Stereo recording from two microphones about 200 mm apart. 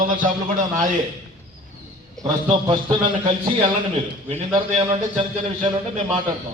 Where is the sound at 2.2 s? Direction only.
25° right (ahead or behind).